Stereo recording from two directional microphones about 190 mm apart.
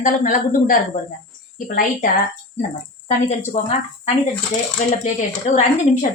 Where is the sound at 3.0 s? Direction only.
35° left (ahead or behind).